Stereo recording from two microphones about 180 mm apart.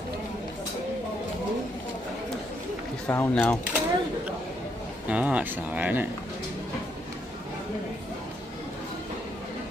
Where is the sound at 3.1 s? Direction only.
10° left (ahead or behind).